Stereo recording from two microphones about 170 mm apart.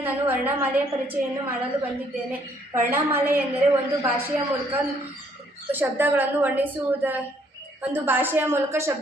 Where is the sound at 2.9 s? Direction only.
15° right (ahead or behind).